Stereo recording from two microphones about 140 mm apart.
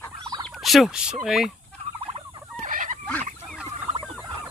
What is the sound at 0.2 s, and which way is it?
Fowl, 30° right (ahead or behind).